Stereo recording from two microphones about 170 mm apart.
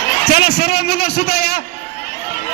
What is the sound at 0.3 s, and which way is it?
A man's voice, 70° left (ahead or behind).